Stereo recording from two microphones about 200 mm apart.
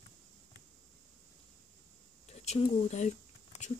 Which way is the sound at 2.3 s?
35° left (ahead or behind).